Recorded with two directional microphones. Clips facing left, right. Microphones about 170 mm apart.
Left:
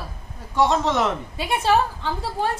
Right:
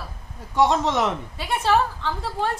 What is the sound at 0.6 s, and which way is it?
Speech, 15° right (ahead or behind).